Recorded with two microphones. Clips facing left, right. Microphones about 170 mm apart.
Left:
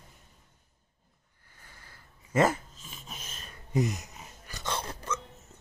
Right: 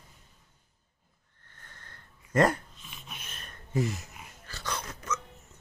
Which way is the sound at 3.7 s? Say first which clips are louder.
Left 1 dB; 20° left (ahead or behind).